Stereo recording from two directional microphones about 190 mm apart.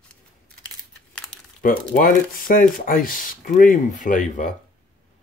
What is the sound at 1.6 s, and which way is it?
Speech, 45° left (ahead or behind).